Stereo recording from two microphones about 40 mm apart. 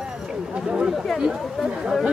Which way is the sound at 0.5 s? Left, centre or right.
Right.